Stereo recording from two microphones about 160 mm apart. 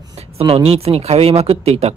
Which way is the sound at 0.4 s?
35° right (ahead or behind).